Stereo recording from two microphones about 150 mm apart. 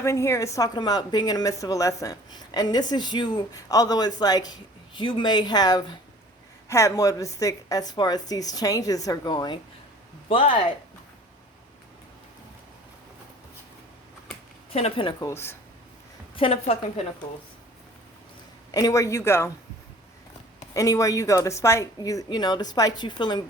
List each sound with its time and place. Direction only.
0.0 s a woman's voice: 20° left (ahead or behind); by 10.7 s 40° left (ahead or behind)
14.7 s a woman's voice: 40° left (ahead or behind)
15.3 s speech: 15° left (ahead or behind)
16.3 s a woman's voice: 40° left (ahead or behind)
18.7 s a woman's voice: 25° left (ahead or behind)
20.7 s a woman's voice: 20° left (ahead or behind)